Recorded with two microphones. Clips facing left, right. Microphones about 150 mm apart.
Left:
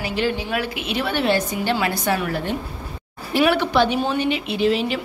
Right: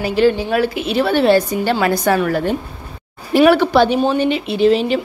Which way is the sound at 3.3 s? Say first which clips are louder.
Right 6 dB; 40° right (ahead or behind).